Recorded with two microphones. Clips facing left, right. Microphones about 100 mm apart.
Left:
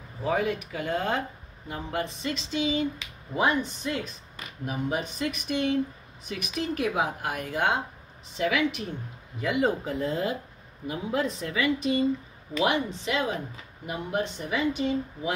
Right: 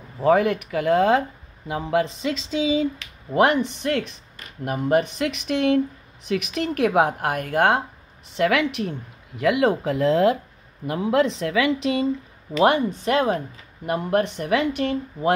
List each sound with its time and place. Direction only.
0.2 s a woman's voice: 75° right (ahead or behind); by 2.1 s 90° right
3.3 s speech: 70° right (ahead or behind)
4.6 s speech: 60° right (ahead or behind); by 5.8 s 75° right (ahead or behind)
6.2 s speech: 90° right; by 8.9 s 70° right (ahead or behind)
9.4 s a woman's voice: 90° right
12.6 s speech: 50° right (ahead or behind); by 15.3 s 65° right (ahead or behind)